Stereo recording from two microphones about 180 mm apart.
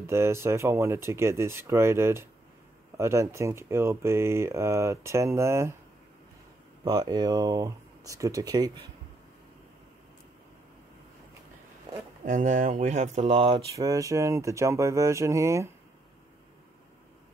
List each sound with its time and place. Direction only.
0.0 s speech: 15° right (ahead or behind)
6.8 s speech: 25° right (ahead or behind)
12.3 s speech: 45° right (ahead or behind)
13.7 s speech: 20° right (ahead or behind)